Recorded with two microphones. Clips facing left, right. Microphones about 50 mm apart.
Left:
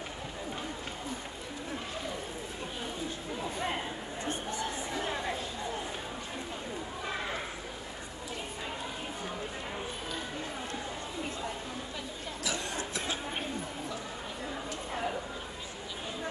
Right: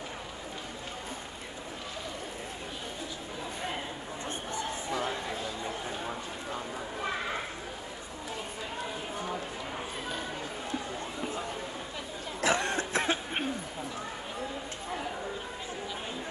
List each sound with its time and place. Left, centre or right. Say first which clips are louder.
12.4 s cough: right 8 dB; right